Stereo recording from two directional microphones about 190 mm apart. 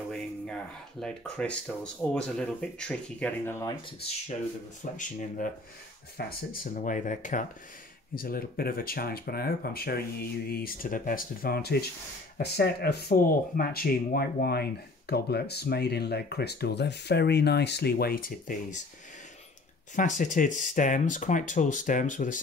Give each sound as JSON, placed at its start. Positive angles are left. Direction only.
{"t": 0.1, "sound": "speech", "side_deg": 5}
{"t": 4.9, "sound": "speech", "side_deg": 40}
{"t": 20.0, "sound": "speech", "side_deg": 40}